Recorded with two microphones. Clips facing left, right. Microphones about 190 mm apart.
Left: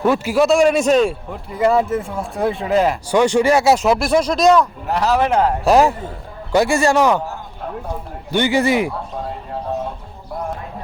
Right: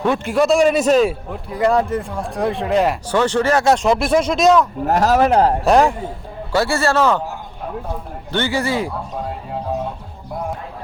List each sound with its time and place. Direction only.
0.0 s a man's voice: 5° left (ahead or behind)
3.1 s a man's voice: 10° left (ahead or behind)
4.9 s speech: 45° right (ahead or behind)
5.6 s a man's voice: 5° left (ahead or behind)
6.5 s speech: 15° left (ahead or behind)
8.3 s speech: 15° left (ahead or behind)